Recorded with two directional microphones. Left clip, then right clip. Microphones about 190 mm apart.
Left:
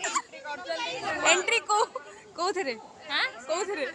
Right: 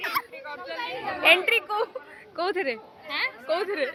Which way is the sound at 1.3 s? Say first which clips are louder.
Right 4 dB; 5° right (ahead or behind).